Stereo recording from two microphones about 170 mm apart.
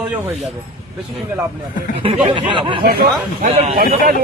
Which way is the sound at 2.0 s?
30° right (ahead or behind).